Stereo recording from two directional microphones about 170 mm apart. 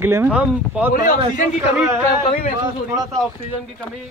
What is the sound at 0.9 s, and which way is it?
Speech, 55° left (ahead or behind).